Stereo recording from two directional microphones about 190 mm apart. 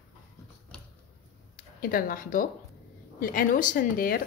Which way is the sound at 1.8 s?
50° left (ahead or behind).